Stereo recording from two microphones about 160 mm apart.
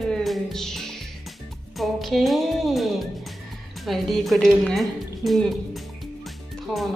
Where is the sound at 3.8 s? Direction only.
Centre (ahead or behind).